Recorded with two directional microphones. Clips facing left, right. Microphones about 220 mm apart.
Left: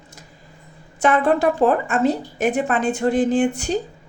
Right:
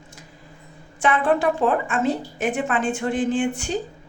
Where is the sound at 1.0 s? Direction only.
40° left (ahead or behind).